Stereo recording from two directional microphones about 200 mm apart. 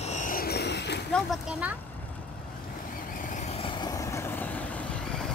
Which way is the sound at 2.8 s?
45° left (ahead or behind).